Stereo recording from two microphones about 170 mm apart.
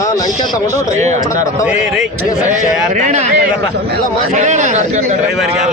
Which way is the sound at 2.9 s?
45° right (ahead or behind).